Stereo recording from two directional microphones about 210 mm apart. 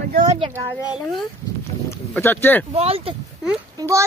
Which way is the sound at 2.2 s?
10° left (ahead or behind).